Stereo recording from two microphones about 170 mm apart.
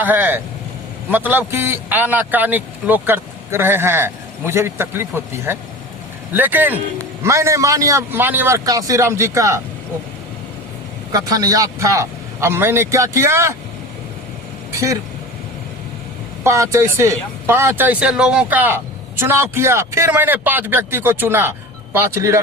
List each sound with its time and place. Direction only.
0.0 s a man's voice: 10° right (ahead or behind)
11.1 s a man's voice: 20° right (ahead or behind)
14.7 s speech: 20° right (ahead or behind)
16.4 s a man's voice: 15° right (ahead or behind)